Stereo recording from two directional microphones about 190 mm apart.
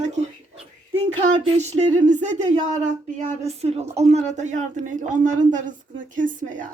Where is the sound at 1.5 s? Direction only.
40° right (ahead or behind).